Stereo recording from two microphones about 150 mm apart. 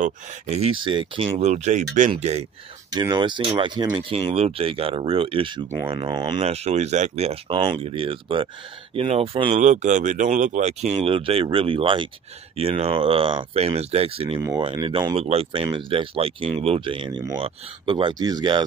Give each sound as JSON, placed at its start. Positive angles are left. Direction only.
{"t": 0.0, "sound": "speech", "side_deg": -45}
{"t": 2.9, "sound": "speech", "side_deg": -30}
{"t": 4.1, "sound": "speech", "side_deg": -45}
{"t": 6.4, "sound": "speech", "side_deg": -45}
{"t": 15.1, "sound": "speech", "side_deg": -40}